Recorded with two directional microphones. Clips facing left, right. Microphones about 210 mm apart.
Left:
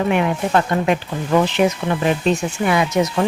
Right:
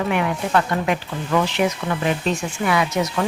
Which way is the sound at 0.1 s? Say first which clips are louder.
Left 3 dB; 25° left (ahead or behind).